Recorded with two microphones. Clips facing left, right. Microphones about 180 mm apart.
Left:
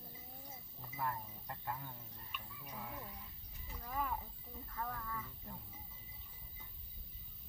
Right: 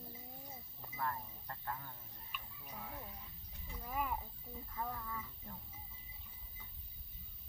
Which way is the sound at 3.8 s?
15° right (ahead or behind).